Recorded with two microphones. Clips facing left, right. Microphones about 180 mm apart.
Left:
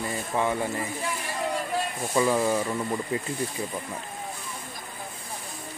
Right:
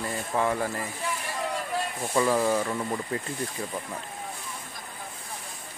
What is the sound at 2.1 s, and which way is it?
Speech, 5° left (ahead or behind).